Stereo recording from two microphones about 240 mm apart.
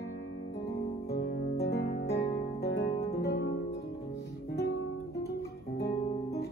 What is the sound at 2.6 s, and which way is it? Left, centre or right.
Guitar, left.